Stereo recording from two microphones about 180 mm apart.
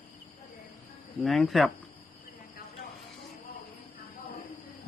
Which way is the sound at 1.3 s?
Centre (ahead or behind).